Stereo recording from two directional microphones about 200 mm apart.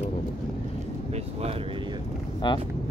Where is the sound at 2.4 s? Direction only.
25° left (ahead or behind).